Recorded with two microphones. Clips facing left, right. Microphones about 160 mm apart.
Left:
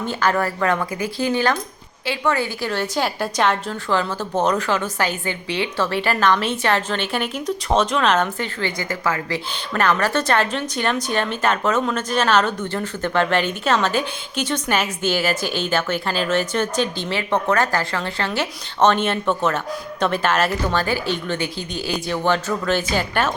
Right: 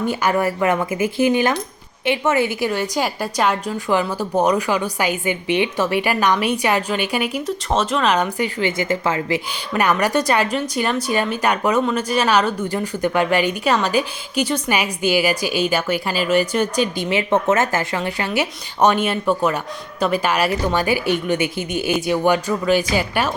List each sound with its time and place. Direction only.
0.0 s a woman's voice: 15° right (ahead or behind)